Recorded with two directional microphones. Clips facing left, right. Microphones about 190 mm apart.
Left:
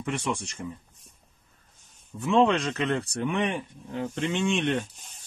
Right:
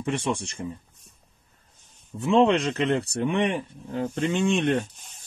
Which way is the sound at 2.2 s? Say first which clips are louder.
Right 2 dB; 25° right (ahead or behind).